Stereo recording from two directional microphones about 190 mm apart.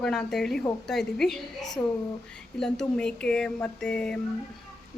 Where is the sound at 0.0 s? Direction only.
5° left (ahead or behind).